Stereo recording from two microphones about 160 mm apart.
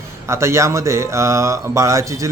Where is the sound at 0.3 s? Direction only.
15° right (ahead or behind).